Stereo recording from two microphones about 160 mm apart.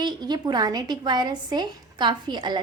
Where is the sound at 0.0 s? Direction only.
25° right (ahead or behind).